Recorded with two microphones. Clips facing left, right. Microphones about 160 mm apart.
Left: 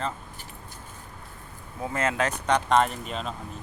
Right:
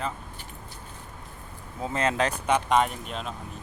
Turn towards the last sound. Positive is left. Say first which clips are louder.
# left 2 dB
turn(degrees=0)  # may be behind; listen again after turning